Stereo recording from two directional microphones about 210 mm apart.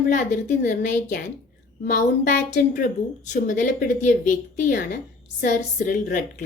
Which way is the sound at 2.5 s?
45° left (ahead or behind).